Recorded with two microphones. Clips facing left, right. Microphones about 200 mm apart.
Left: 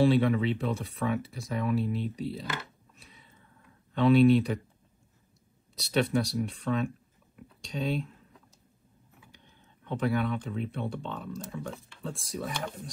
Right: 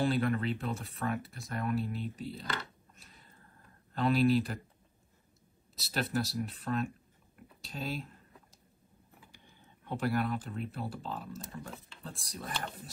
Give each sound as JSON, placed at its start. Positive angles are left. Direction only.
{"t": 0.0, "sound": "speech", "side_deg": 0}
{"t": 3.0, "sound": "a sound", "side_deg": 0}
{"t": 3.9, "sound": "speech", "side_deg": 0}
{"t": 5.8, "sound": "speech", "side_deg": 0}
{"t": 7.3, "sound": "a sound", "side_deg": -5}
{"t": 9.3, "sound": "speech", "side_deg": -10}